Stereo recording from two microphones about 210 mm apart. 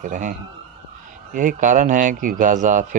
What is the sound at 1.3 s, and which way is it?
Speech, 40° right (ahead or behind).